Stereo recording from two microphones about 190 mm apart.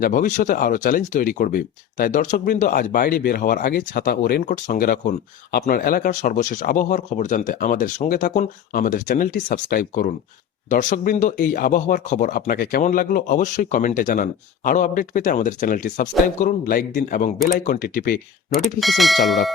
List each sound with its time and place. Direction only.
0.0 s speech: 45° left (ahead or behind)
18.6 s speech: centre (ahead or behind)